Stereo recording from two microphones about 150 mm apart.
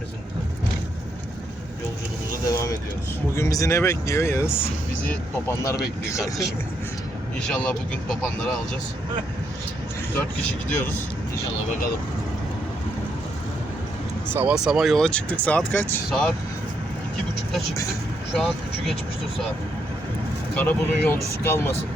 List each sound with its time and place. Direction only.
2.5 s speech: 20° left (ahead or behind)
7.4 s speech: 5° left (ahead or behind)
10.2 s speech: 10° left (ahead or behind)
14.3 s speech: 10° right (ahead or behind); by 16.3 s 10° left (ahead or behind)
18.3 s speech: centre (ahead or behind)
20.6 s speech: 10° left (ahead or behind)